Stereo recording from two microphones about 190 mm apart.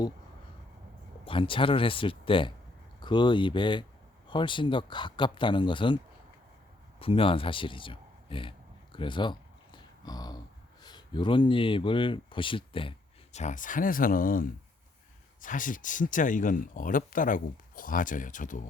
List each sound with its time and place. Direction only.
1.2 s speech: 25° left (ahead or behind)
7.0 s a sound: 30° left (ahead or behind)
10.8 s speech: 25° left (ahead or behind)
13.3 s speech: 40° left (ahead or behind)